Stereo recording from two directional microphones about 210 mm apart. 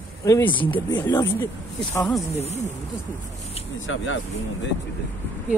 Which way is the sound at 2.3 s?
30° left (ahead or behind).